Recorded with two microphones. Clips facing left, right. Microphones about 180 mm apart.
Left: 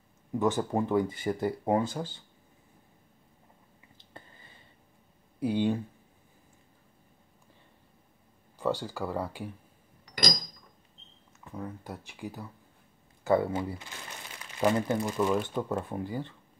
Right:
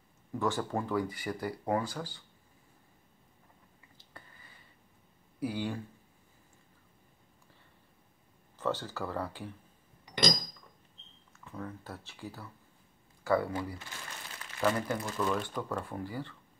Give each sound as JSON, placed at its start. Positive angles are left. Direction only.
{"t": 0.3, "sound": "speech", "side_deg": 20}
{"t": 4.0, "sound": "a sound", "side_deg": 25}
{"t": 5.4, "sound": "speech", "side_deg": 25}
{"t": 8.5, "sound": "speech", "side_deg": 15}
{"t": 10.0, "sound": "a sound", "side_deg": -25}
{"t": 11.4, "sound": "speech", "side_deg": 15}